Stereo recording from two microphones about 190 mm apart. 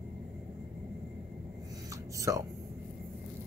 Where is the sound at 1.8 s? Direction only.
15° right (ahead or behind).